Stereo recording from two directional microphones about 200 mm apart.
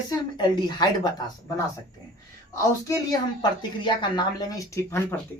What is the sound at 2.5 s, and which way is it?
Speech, 15° left (ahead or behind).